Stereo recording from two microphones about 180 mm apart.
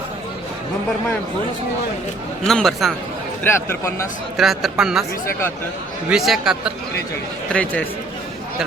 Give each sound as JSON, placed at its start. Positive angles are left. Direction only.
{"t": 2.5, "sound": "speech", "side_deg": 0}
{"t": 3.4, "sound": "speech", "side_deg": 15}
{"t": 4.4, "sound": "speech", "side_deg": 0}
{"t": 6.1, "sound": "speech", "side_deg": 0}
{"t": 7.5, "sound": "speech", "side_deg": 10}